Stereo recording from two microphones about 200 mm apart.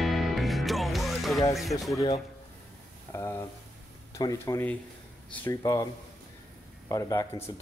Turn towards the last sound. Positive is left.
turn(degrees=15)  # may be behind; listen again after turning